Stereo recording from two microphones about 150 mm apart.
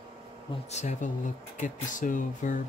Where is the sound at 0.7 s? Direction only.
55° left (ahead or behind).